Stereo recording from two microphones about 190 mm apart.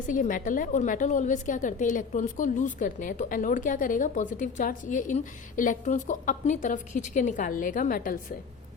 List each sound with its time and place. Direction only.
0.1 s a woman's voice: 45° left (ahead or behind)